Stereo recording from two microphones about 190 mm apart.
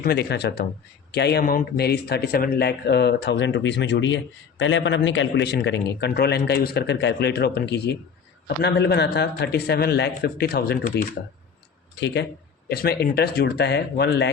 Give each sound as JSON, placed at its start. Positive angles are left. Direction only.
{"t": 0.0, "sound": "a man's voice", "side_deg": 60}
{"t": 11.9, "sound": "speech", "side_deg": 65}
{"t": 12.6, "sound": "a man's voice", "side_deg": 55}